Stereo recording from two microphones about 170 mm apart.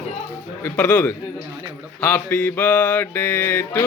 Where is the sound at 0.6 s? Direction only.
10° left (ahead or behind).